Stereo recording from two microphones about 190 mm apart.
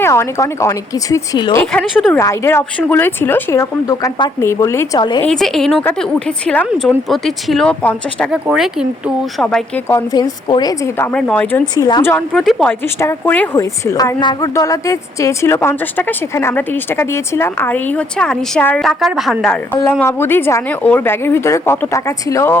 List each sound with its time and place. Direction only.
0.0 s speech: 15° left (ahead or behind)
1.8 s speech: centre (ahead or behind)
2.1 s speech: 15° left (ahead or behind)
5.2 s speech: 5° left (ahead or behind)
8.3 s speech: 5° right (ahead or behind)
9.9 s speech: 20° left (ahead or behind)
11.7 s speech: 20° left (ahead or behind)
12.1 s speech: centre (ahead or behind)